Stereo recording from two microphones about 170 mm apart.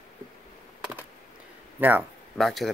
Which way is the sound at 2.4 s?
Centre (ahead or behind).